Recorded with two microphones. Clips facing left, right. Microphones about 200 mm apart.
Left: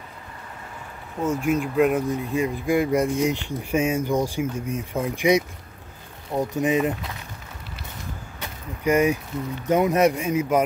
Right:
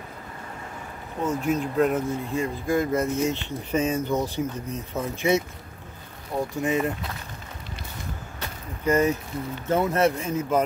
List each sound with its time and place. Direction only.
1.2 s speech: 10° left (ahead or behind)
8.8 s speech: 10° left (ahead or behind)